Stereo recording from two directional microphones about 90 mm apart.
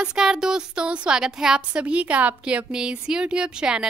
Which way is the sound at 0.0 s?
10° right (ahead or behind).